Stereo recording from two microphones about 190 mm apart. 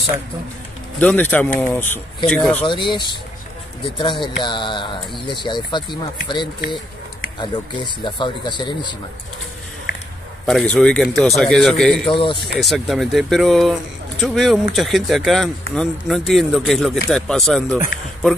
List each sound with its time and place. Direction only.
0.9 s a man's voice: 10° left (ahead or behind)
2.6 s speech: 25° left (ahead or behind)
10.4 s a man's voice: centre (ahead or behind)
12.1 s speech: 25° left (ahead or behind)
12.6 s a man's voice: centre (ahead or behind)